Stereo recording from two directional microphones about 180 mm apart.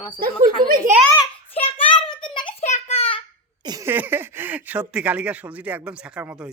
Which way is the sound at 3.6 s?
20° right (ahead or behind).